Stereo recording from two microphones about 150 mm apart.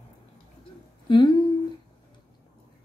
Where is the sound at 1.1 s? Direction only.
30° left (ahead or behind).